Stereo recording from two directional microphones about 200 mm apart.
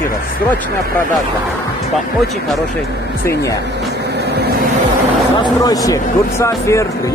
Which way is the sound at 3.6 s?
55° right (ahead or behind).